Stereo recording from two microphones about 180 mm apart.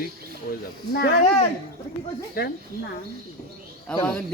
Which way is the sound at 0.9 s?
65° left (ahead or behind).